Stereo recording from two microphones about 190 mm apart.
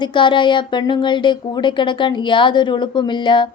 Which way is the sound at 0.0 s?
25° left (ahead or behind).